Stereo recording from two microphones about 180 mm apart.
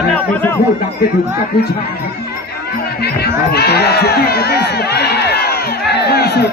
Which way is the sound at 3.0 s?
60° left (ahead or behind).